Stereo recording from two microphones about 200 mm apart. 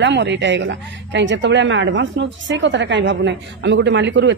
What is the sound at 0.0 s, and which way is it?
A woman's voice, 60° right (ahead or behind).